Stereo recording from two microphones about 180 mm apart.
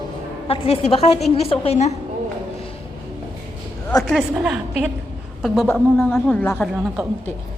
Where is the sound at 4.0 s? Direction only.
Centre (ahead or behind).